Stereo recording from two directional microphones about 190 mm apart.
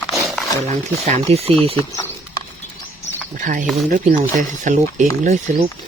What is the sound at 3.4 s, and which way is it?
Speech, 45° right (ahead or behind).